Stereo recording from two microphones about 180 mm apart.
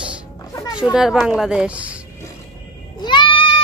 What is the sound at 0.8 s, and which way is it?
A woman's voice, 5° right (ahead or behind).